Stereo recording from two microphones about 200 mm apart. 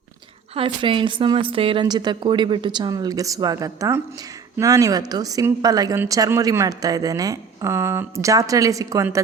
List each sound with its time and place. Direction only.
0.5 s a woman's voice: 25° right (ahead or behind)